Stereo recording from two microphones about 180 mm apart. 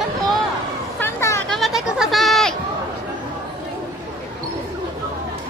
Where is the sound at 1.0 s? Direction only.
15° left (ahead or behind).